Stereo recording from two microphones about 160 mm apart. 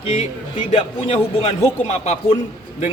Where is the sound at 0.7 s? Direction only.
40° left (ahead or behind).